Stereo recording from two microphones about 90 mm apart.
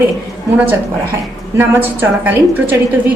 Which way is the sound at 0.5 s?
20° right (ahead or behind).